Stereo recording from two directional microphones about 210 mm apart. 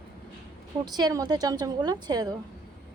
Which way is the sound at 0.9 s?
20° right (ahead or behind).